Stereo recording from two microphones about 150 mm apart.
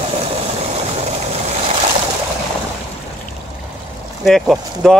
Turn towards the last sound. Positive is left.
turn(degrees=0)  # may be behind; listen again after turning